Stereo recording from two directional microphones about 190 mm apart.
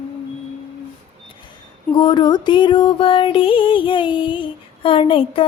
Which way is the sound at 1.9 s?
25° left (ahead or behind).